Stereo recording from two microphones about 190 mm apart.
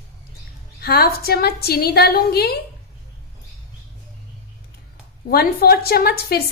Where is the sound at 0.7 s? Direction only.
55° left (ahead or behind).